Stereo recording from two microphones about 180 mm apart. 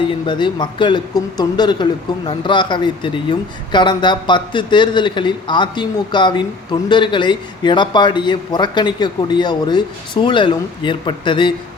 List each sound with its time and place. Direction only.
0.3 s speech: 25° left (ahead or behind)